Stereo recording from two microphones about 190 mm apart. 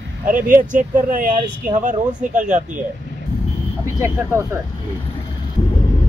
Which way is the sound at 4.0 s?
15° right (ahead or behind).